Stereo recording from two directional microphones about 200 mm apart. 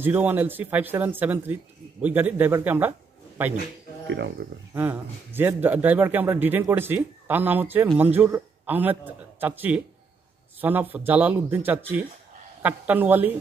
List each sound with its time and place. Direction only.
0.0 s a man's voice: 10° right (ahead or behind)
4.1 s speech: 60° right (ahead or behind)
4.7 s a man's voice: 10° right (ahead or behind)